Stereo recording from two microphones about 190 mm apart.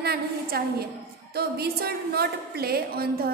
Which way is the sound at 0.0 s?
55° right (ahead or behind).